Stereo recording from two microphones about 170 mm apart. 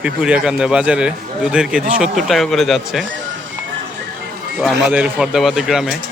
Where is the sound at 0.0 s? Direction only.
5° right (ahead or behind).